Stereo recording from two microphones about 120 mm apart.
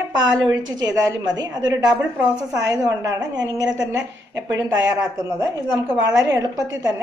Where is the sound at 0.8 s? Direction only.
35° right (ahead or behind).